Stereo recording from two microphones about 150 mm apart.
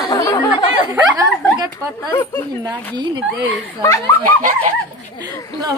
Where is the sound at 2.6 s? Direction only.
30° right (ahead or behind).